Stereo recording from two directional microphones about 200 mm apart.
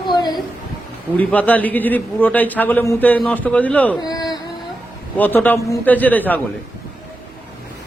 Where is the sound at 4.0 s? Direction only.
20° left (ahead or behind).